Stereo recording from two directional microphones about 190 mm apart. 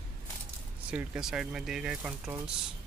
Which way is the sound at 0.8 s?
5° right (ahead or behind).